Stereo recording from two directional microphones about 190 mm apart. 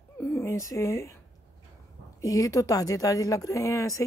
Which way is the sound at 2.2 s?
15° left (ahead or behind).